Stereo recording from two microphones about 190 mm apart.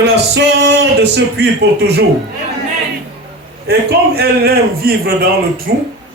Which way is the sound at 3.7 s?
55° right (ahead or behind).